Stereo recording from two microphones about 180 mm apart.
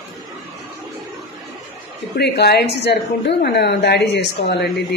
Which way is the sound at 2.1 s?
65° left (ahead or behind).